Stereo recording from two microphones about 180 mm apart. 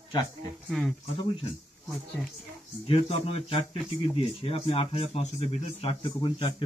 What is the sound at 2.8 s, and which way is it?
Speech, 30° left (ahead or behind).